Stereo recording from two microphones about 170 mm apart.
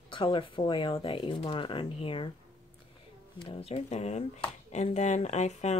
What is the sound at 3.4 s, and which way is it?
Speech, 35° left (ahead or behind).